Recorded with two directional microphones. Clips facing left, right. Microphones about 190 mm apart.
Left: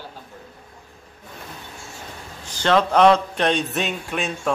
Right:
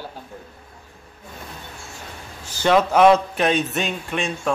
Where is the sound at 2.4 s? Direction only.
10° right (ahead or behind).